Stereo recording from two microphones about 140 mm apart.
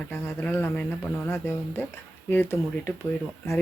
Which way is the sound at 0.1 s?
15° left (ahead or behind).